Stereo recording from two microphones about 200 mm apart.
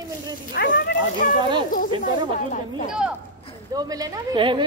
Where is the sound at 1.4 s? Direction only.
25° right (ahead or behind).